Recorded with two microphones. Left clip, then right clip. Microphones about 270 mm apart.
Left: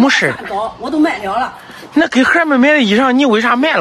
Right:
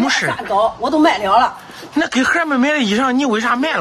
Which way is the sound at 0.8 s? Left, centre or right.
Centre.